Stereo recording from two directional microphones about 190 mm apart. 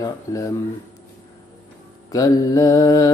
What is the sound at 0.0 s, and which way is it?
Speech, 15° left (ahead or behind).